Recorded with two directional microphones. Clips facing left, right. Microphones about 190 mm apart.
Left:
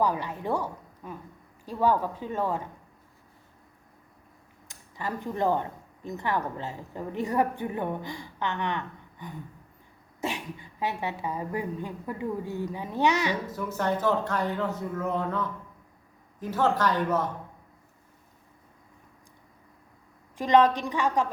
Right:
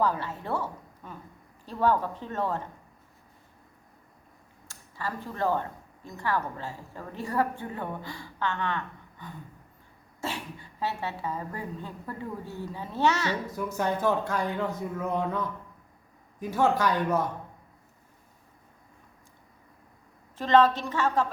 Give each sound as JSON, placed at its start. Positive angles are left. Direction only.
{"t": 0.0, "sound": "a woman's voice", "side_deg": 15}
{"t": 4.7, "sound": "a woman's voice", "side_deg": 20}
{"t": 13.5, "sound": "speech", "side_deg": -15}
{"t": 20.4, "sound": "a woman's voice", "side_deg": 15}